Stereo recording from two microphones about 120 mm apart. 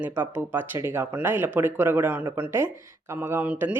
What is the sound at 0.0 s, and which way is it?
Speech, 15° right (ahead or behind).